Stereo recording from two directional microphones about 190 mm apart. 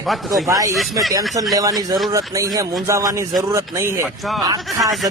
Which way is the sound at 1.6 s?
20° right (ahead or behind).